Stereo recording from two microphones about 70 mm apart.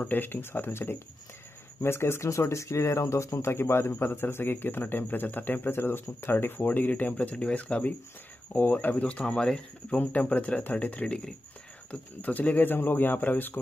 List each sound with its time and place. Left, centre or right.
0.0 s speech: left